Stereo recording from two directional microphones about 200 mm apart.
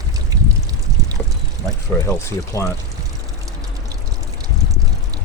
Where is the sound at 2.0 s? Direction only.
15° left (ahead or behind).